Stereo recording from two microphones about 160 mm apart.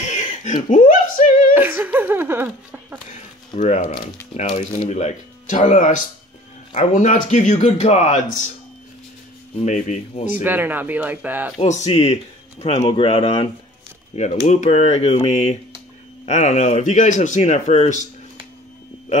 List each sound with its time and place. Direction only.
0.1 s a sound: 50° left (ahead or behind)
1.5 s speech: 10° right (ahead or behind)
3.1 s a man's voice: 45° left (ahead or behind)
9.6 s a man's voice: 45° left (ahead or behind)
10.3 s speech: 10° right (ahead or behind)
11.6 s a man's voice: 45° left (ahead or behind)